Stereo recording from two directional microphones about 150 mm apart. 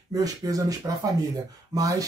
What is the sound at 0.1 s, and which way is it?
Speech, 25° right (ahead or behind).